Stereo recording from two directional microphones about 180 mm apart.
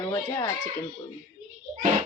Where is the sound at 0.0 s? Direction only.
20° left (ahead or behind).